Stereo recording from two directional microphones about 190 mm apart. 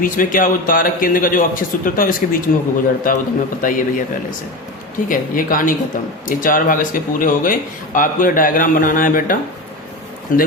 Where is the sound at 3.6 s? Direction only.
45° left (ahead or behind).